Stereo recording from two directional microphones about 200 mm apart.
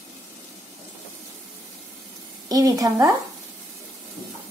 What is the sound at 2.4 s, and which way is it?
Speech, 20° right (ahead or behind).